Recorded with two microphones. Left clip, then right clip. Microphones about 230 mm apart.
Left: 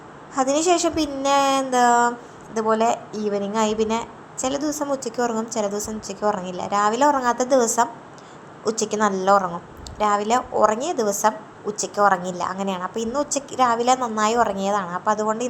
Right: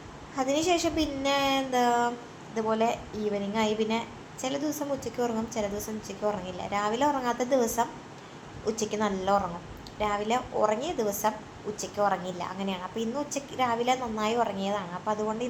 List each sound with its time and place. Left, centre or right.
0.3 s a woman's voice: left